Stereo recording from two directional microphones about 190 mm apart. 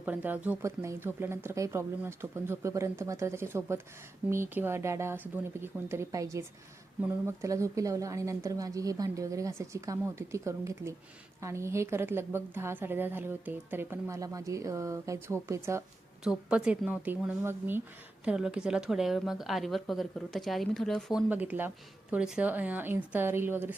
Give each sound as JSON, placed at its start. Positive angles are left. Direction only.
{"t": 0.0, "sound": "a woman's voice", "side_deg": -10}
{"t": 16.2, "sound": "a woman's voice", "side_deg": -5}